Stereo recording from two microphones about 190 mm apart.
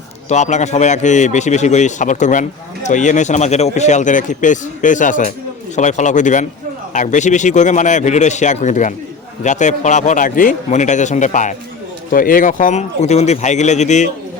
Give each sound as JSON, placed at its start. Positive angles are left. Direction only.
{"t": 0.3, "sound": "speech", "side_deg": 40}